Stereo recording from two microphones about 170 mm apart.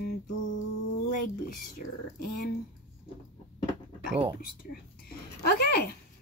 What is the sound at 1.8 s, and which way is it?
Speech, 55° left (ahead or behind).